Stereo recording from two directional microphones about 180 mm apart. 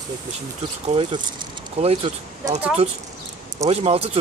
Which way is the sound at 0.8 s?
30° right (ahead or behind).